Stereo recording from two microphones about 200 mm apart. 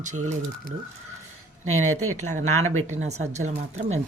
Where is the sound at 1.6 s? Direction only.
90° right.